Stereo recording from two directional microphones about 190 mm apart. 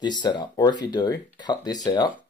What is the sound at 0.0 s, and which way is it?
Speech, 25° left (ahead or behind).